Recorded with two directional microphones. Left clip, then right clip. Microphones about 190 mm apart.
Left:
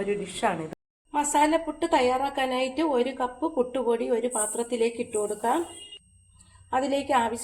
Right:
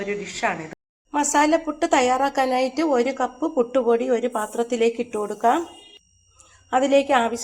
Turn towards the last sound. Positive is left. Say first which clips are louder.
# right 6 dB
turn(degrees=-30)  # may be behind; listen again after turning